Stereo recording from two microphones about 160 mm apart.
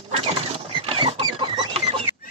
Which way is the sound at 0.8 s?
35° right (ahead or behind).